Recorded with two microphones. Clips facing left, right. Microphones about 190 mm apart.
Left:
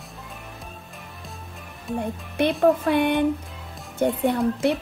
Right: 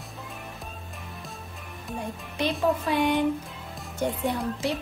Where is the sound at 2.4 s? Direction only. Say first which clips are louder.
Left 6 dB; 60° left (ahead or behind).